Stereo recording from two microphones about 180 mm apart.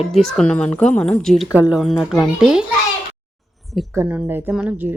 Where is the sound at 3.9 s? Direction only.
10° right (ahead or behind).